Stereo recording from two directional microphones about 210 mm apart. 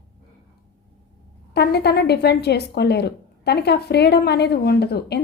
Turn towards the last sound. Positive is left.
turn(degrees=50)  # may be behind; listen again after turning